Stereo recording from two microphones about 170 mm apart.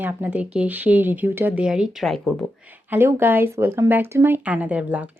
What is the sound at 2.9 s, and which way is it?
Speech, 15° right (ahead or behind).